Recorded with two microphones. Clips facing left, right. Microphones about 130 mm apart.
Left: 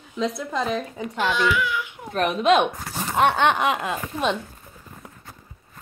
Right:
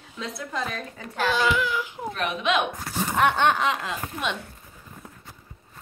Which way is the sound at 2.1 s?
40° left (ahead or behind).